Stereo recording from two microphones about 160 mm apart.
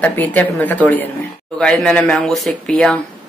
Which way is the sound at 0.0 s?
10° left (ahead or behind).